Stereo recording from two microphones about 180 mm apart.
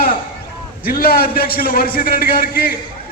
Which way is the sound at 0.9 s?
55° left (ahead or behind).